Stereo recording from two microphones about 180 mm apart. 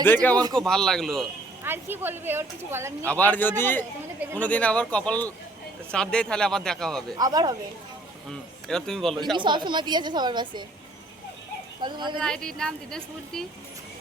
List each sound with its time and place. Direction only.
0.0 s speech: 10° left (ahead or behind)
1.6 s speech: 10° right (ahead or behind)
3.1 s speech: 10° left (ahead or behind)
7.2 s a woman's voice: 20° right (ahead or behind)
8.6 s speech: 5° left (ahead or behind)
9.3 s a woman's voice: 25° right (ahead or behind)
11.8 s a woman's voice: 25° right (ahead or behind)
12.2 s speech: 5° left (ahead or behind)